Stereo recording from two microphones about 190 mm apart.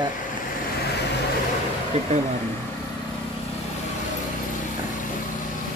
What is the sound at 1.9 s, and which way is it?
Speech, 35° right (ahead or behind).